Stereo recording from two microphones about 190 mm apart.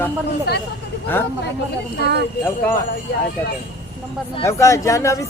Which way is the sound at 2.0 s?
60° right (ahead or behind).